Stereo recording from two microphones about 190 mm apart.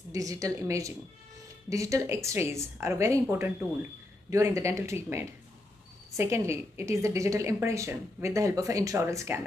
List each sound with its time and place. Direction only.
0.1 s a woman's voice: 20° right (ahead or behind)